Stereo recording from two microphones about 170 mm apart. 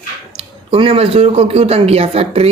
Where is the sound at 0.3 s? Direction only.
35° right (ahead or behind).